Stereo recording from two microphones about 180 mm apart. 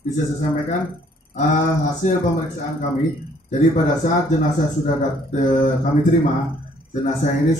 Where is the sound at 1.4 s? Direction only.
45° left (ahead or behind).